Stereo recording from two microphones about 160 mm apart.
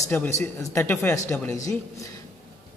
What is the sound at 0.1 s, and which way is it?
A man's voice, 15° left (ahead or behind).